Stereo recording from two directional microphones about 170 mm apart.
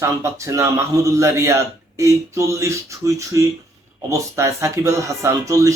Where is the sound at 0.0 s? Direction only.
15° right (ahead or behind).